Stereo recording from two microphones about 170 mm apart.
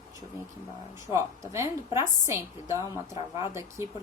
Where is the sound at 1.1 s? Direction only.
15° right (ahead or behind).